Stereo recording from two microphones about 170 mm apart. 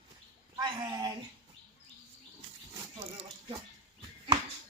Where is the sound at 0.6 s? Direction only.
25° right (ahead or behind).